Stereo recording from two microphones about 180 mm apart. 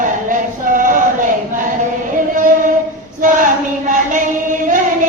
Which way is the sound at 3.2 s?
45° right (ahead or behind).